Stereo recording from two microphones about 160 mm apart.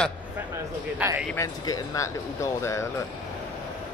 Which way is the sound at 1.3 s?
20° left (ahead or behind).